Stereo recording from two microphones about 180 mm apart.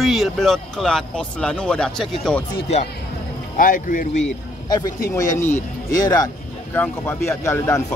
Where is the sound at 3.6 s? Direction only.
50° left (ahead or behind).